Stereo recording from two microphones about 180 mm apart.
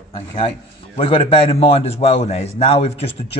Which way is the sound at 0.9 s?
30° left (ahead or behind).